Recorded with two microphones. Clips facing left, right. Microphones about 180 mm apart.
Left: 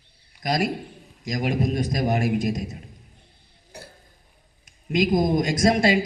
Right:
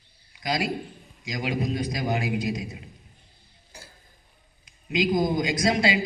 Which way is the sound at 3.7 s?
65° left (ahead or behind).